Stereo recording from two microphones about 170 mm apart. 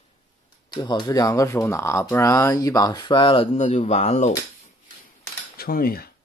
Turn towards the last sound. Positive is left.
turn(degrees=60)  # may be behind; listen again after turning